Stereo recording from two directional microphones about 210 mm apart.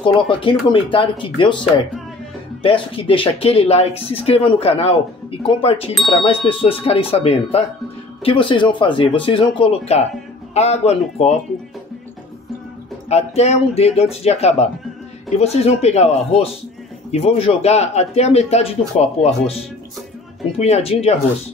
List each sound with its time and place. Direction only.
0.0 s speech: 25° left (ahead or behind)
13.1 s speech: 30° left (ahead or behind)
20.5 s speech: 30° left (ahead or behind)